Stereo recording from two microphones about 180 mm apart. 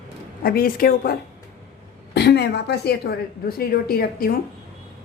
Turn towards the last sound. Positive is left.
turn(degrees=55)  # may be behind; listen again after turning